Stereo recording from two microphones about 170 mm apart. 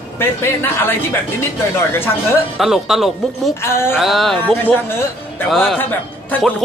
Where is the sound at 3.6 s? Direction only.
15° left (ahead or behind).